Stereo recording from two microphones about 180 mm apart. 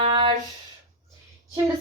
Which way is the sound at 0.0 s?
30° right (ahead or behind).